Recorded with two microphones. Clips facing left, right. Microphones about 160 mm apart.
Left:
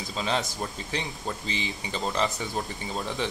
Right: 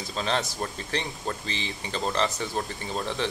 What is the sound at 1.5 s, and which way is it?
Speech, 15° left (ahead or behind).